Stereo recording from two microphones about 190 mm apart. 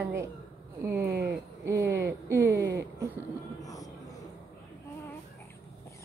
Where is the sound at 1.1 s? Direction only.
60° right (ahead or behind).